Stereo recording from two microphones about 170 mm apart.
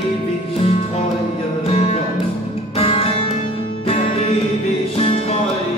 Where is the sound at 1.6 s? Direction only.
40° left (ahead or behind).